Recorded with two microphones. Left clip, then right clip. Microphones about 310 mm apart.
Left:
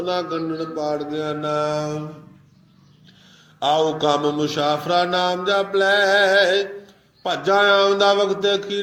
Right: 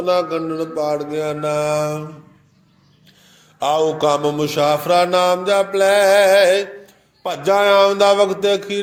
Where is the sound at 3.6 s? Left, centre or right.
Right.